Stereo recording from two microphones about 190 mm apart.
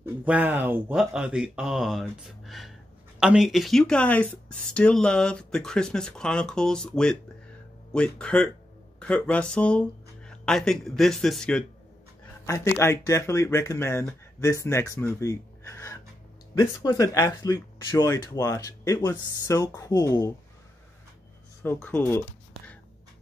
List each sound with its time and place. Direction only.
0.0 s speech: 10° right (ahead or behind)
12.4 s speech: 15° left (ahead or behind)
21.6 s speech: 10° left (ahead or behind)